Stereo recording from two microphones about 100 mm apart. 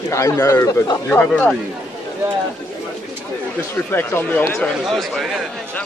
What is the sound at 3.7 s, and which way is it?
Speech, 20° left (ahead or behind).